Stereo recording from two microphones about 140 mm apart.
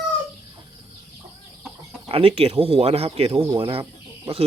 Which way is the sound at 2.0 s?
40° right (ahead or behind).